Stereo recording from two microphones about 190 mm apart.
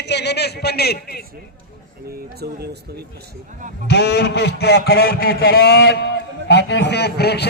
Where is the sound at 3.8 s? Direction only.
60° left (ahead or behind).